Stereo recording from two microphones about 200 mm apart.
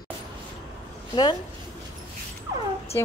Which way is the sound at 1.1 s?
20° left (ahead or behind).